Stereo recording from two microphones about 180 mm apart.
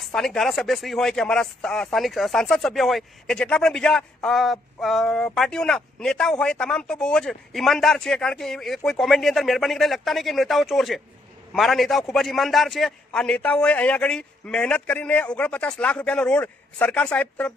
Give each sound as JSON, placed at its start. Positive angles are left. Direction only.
{"t": 0.0, "sound": "speech", "side_deg": 0}